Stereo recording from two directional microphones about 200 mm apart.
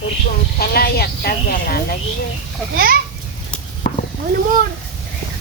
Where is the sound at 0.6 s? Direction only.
50° left (ahead or behind).